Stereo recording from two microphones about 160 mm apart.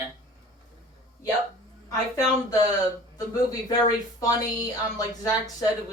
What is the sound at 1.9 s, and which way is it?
A woman's voice, 20° left (ahead or behind).